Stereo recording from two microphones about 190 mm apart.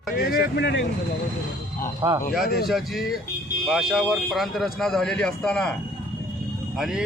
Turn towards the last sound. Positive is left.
turn(degrees=0)  # may be behind; listen again after turning